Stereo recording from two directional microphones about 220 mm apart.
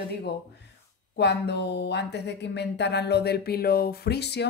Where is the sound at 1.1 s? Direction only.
50° left (ahead or behind).